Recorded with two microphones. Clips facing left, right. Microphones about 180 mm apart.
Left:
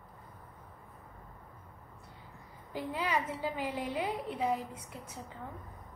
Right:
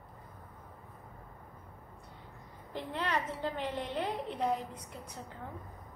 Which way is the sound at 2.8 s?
10° left (ahead or behind).